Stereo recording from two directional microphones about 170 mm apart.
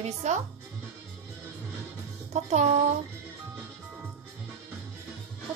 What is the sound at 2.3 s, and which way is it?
Speech, 40° right (ahead or behind).